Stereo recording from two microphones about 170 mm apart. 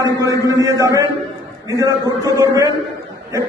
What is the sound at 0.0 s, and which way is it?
A man's voice, 20° right (ahead or behind).